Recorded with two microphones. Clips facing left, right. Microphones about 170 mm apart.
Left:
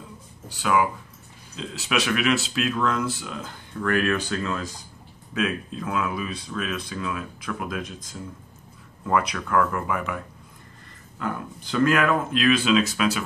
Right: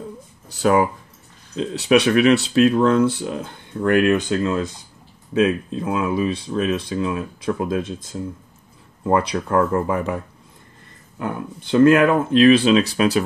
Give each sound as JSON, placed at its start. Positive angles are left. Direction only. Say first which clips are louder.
{"t": 0.6, "sound": "speech", "louder": "right 6 dB", "side_deg": -40}